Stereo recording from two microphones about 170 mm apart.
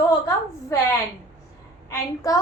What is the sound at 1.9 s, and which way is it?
Speech, 20° left (ahead or behind).